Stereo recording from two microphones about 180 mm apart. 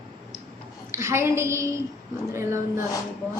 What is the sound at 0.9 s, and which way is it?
A woman's voice, 15° right (ahead or behind).